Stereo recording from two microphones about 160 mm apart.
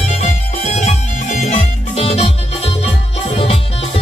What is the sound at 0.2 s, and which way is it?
Music, 45° left (ahead or behind).